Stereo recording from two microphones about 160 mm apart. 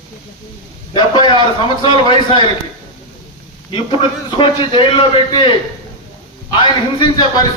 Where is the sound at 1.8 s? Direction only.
30° left (ahead or behind).